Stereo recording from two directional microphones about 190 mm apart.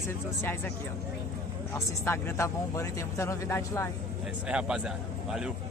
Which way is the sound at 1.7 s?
15° left (ahead or behind).